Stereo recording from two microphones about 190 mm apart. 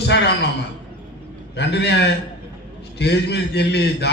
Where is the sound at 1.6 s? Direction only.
65° left (ahead or behind).